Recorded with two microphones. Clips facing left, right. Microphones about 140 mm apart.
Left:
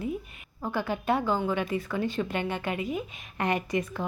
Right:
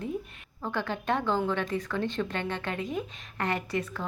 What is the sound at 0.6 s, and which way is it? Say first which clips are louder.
A woman's voice: left 2 dB; 10° left (ahead or behind).